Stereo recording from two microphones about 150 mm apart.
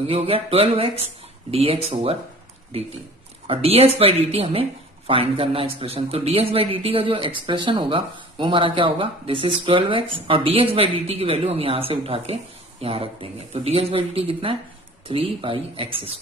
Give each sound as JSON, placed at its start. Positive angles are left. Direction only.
{"t": 0.1, "sound": "speech", "side_deg": -40}
{"t": 3.4, "sound": "speech", "side_deg": -40}